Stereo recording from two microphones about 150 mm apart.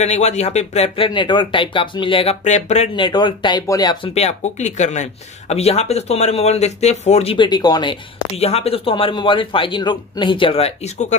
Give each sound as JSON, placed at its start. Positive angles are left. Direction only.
{"t": 0.0, "sound": "speech", "side_deg": 50}
{"t": 2.4, "sound": "speech", "side_deg": 50}
{"t": 3.0, "sound": "speech", "side_deg": 30}
{"t": 4.1, "sound": "speech", "side_deg": 45}
{"t": 7.3, "sound": "speech", "side_deg": 30}